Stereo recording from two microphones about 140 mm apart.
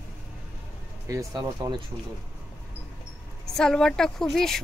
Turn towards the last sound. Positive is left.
turn(degrees=5)  # may be behind; listen again after turning